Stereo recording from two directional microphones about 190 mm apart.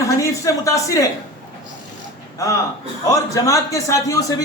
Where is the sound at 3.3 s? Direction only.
15° left (ahead or behind).